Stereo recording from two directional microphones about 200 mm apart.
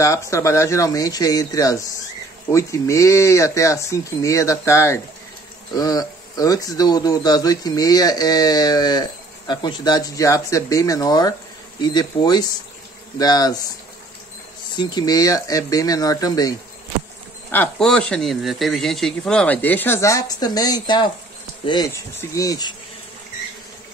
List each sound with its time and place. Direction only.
0.0 s speech: 15° left (ahead or behind)
14.8 s speech: 20° left (ahead or behind)
17.5 s speech: 5° left (ahead or behind)